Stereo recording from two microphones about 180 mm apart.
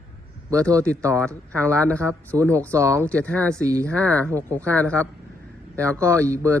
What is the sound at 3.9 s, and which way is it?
Speech, 5° left (ahead or behind).